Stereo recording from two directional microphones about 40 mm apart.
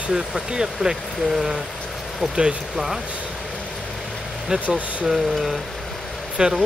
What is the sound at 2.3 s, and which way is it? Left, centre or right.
Speech, right.